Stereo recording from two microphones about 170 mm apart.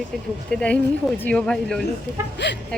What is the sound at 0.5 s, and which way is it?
Speech, 5° left (ahead or behind).